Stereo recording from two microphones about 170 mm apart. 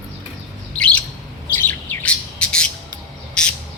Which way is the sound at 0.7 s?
5° left (ahead or behind).